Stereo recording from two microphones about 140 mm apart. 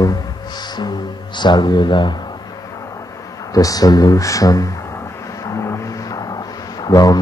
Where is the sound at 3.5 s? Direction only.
25° left (ahead or behind).